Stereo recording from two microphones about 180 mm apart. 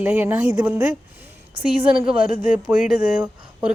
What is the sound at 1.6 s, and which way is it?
Speech, 30° right (ahead or behind).